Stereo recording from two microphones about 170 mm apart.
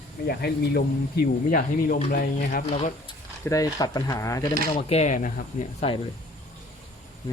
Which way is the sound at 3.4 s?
20° left (ahead or behind).